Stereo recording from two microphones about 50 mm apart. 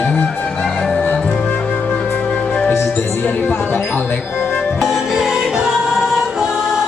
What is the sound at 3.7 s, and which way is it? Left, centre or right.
Speech, left.